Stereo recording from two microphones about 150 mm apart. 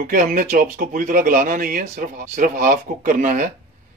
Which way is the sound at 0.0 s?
65° right (ahead or behind).